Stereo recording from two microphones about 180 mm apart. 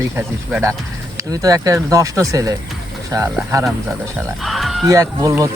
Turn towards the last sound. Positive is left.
turn(degrees=-15)  # may be behind; listen again after turning